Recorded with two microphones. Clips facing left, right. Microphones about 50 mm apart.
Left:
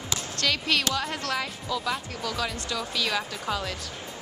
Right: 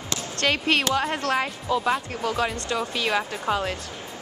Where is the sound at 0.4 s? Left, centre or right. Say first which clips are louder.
Right 4 dB; right.